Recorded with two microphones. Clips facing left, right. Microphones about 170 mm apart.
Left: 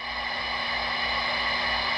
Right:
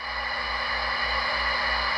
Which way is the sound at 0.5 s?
20° left (ahead or behind).